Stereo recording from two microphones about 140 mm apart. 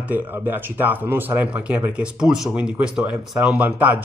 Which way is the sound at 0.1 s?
15° right (ahead or behind).